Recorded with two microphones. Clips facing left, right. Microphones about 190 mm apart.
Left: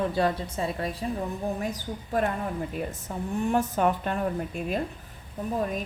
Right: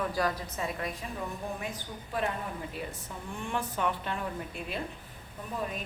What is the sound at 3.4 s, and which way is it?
A woman's voice, 45° left (ahead or behind).